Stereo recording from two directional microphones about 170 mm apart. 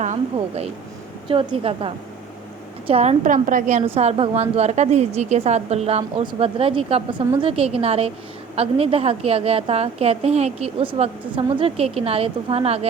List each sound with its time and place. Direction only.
0.3 s a woman's voice: 40° right (ahead or behind)